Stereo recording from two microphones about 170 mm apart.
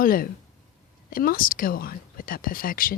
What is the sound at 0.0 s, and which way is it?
Speech, 55° left (ahead or behind).